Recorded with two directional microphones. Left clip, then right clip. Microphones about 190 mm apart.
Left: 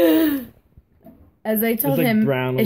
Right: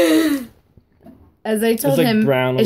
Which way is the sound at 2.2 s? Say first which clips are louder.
Right 5 dB; 10° right (ahead or behind).